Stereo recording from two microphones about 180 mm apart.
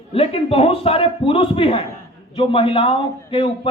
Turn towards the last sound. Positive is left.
turn(degrees=30)  # may be behind; listen again after turning